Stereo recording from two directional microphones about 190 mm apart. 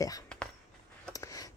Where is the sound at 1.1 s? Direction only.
20° left (ahead or behind).